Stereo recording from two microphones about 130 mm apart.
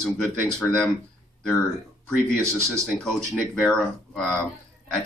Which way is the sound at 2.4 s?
20° right (ahead or behind).